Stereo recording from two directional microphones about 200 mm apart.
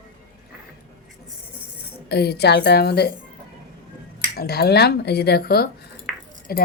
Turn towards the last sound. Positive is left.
turn(degrees=50)  # may be behind; listen again after turning